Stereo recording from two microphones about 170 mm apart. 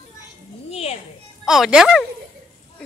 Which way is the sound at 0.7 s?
35° left (ahead or behind).